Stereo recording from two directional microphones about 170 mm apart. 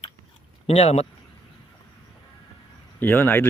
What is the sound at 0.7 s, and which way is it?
Speech, 40° left (ahead or behind).